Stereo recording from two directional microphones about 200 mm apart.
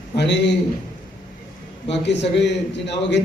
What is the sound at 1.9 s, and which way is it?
A man's voice, 60° left (ahead or behind).